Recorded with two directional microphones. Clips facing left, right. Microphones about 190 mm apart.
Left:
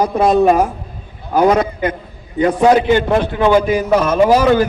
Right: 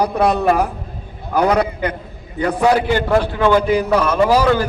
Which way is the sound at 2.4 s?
20° left (ahead or behind).